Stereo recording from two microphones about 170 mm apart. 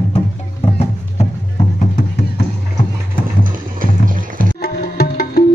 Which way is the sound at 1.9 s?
70° left (ahead or behind).